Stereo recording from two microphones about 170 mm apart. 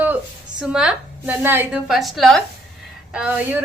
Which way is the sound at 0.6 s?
5° right (ahead or behind).